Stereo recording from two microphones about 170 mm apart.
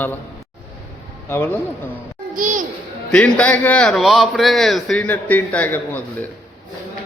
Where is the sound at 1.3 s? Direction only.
15° left (ahead or behind).